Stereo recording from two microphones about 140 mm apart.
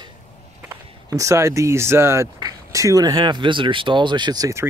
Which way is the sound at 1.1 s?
20° right (ahead or behind).